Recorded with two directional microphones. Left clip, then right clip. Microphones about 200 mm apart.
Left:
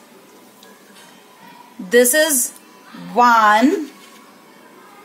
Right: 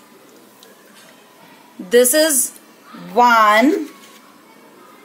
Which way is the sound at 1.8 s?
15° right (ahead or behind).